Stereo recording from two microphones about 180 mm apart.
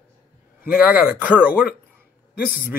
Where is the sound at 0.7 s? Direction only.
5° right (ahead or behind).